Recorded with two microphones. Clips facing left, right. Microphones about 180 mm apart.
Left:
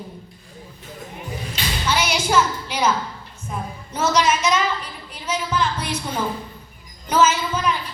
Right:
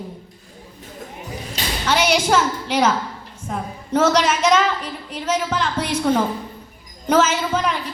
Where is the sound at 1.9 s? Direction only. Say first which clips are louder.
Right 4 dB; 80° right.